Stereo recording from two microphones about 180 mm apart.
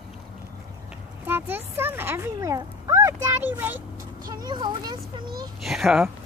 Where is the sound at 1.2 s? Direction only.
10° right (ahead or behind).